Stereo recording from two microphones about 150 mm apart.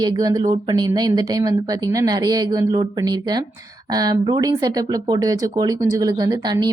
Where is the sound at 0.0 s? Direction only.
25° right (ahead or behind).